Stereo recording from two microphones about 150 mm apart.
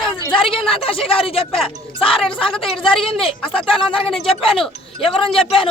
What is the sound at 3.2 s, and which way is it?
A woman's voice, 35° left (ahead or behind).